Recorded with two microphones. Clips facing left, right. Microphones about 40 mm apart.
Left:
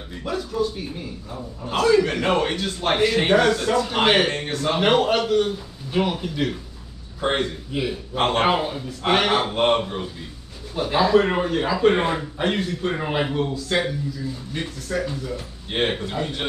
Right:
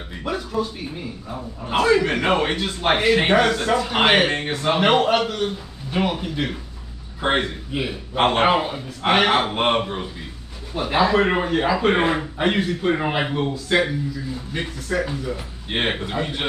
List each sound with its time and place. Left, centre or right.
0.1 s a man's voice: centre